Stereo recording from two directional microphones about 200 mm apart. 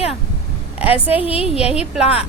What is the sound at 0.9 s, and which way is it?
Speech, 30° left (ahead or behind).